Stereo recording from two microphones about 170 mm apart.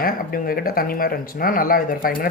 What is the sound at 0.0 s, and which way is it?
Speech, 60° left (ahead or behind).